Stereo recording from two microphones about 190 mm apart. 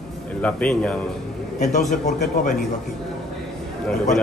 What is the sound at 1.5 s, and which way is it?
Speech, 40° left (ahead or behind).